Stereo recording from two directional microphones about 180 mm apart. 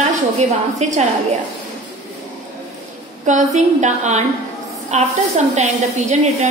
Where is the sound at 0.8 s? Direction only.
40° right (ahead or behind).